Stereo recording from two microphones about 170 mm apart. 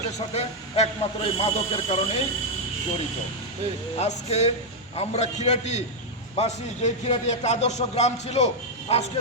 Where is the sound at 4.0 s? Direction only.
40° left (ahead or behind).